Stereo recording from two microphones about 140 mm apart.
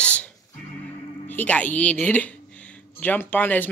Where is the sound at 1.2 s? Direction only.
10° left (ahead or behind).